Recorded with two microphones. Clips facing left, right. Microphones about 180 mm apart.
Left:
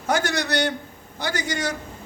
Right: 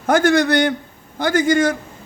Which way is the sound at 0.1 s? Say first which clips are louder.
Right 9 dB; 50° right (ahead or behind).